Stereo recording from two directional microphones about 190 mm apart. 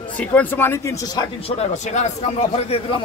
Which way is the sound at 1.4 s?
35° left (ahead or behind).